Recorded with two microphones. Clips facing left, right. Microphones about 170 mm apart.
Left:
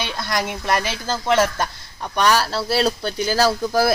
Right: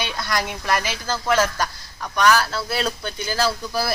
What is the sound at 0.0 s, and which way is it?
Speech, 25° left (ahead or behind).